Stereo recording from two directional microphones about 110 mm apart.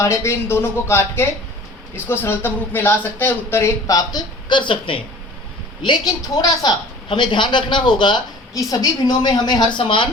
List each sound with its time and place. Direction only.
0.0 s speech: 25° left (ahead or behind)
3.8 s a man's voice: 35° left (ahead or behind); by 5.0 s 50° left (ahead or behind)
6.2 s a man's voice: 35° left (ahead or behind)
9.7 s a man's voice: 50° left (ahead or behind)